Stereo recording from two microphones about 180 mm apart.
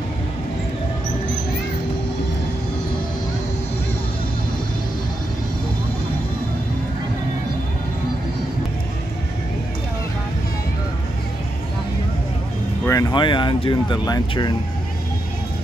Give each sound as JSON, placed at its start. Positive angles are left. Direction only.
{"t": 12.8, "sound": "speech", "side_deg": 20}